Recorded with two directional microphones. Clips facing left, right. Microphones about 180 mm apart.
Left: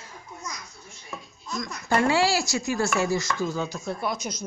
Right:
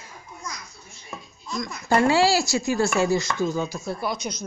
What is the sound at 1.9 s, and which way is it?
A woman's voice, 30° right (ahead or behind).